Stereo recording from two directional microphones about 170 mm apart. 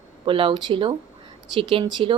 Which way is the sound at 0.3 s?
30° right (ahead or behind).